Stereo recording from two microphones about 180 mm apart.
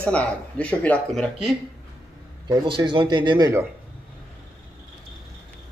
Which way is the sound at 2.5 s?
25° right (ahead or behind).